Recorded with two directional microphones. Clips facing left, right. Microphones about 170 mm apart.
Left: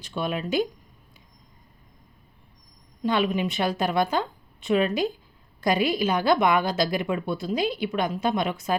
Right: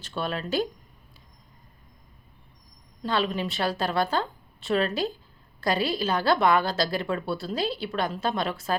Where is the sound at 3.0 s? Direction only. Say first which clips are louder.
Left 3 dB; 15° left (ahead or behind).